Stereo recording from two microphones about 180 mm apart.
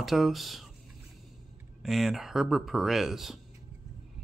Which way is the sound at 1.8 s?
Centre (ahead or behind).